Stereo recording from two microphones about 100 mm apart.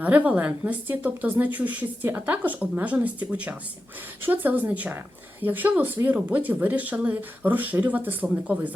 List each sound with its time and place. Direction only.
0.0 s a woman's voice: 15° right (ahead or behind)